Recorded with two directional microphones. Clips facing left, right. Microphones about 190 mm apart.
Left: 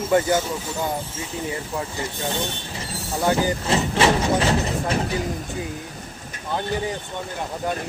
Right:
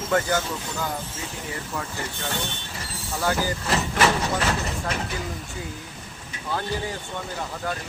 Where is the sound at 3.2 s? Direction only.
20° left (ahead or behind).